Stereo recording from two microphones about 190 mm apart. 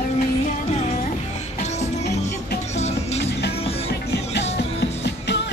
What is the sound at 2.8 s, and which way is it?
Music, 35° left (ahead or behind).